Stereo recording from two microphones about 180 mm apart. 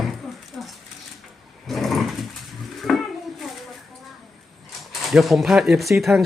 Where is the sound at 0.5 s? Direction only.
Centre (ahead or behind).